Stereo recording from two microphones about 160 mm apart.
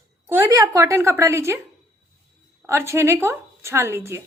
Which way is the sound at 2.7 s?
15° right (ahead or behind).